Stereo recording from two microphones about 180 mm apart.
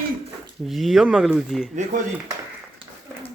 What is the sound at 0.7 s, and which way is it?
A man's voice, centre (ahead or behind).